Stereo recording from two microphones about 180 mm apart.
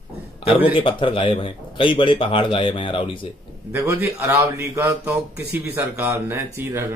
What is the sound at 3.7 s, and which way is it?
Speech, 15° right (ahead or behind).